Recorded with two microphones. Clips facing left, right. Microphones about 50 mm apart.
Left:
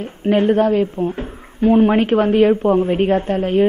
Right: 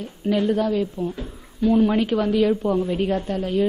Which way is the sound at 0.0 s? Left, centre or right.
Left.